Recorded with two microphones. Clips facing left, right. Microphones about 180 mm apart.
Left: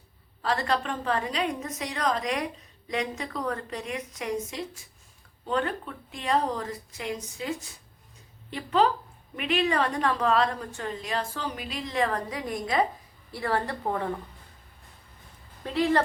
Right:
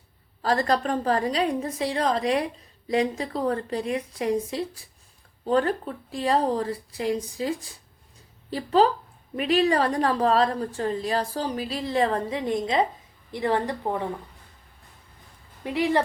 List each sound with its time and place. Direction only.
0.4 s a woman's voice: 40° right (ahead or behind); by 14.1 s 15° right (ahead or behind)
15.6 s a woman's voice: 15° right (ahead or behind)